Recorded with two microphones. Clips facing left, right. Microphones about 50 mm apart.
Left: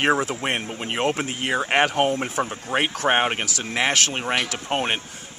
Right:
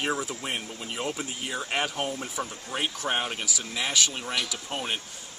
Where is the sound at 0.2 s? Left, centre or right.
Left.